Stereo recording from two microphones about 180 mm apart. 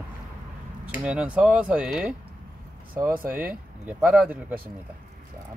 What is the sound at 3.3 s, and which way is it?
Speech, 10° right (ahead or behind).